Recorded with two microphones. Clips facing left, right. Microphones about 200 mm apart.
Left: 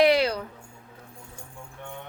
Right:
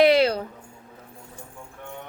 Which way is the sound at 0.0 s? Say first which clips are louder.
Right 3 dB; 25° right (ahead or behind).